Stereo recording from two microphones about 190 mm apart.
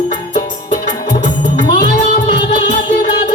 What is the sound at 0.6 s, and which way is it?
Music, 45° left (ahead or behind).